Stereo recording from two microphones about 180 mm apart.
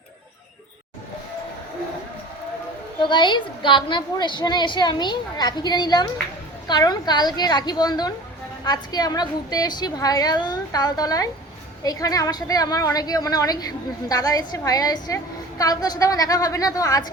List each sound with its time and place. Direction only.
3.0 s a woman's voice: 25° left (ahead or behind)